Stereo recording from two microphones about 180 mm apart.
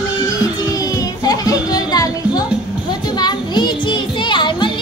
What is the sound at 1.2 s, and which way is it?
Music, 20° left (ahead or behind).